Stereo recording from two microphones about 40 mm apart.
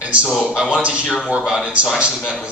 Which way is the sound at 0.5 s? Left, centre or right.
Right.